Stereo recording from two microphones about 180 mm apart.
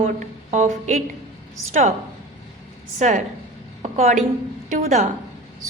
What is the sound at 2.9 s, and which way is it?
A woman's voice, 45° right (ahead or behind).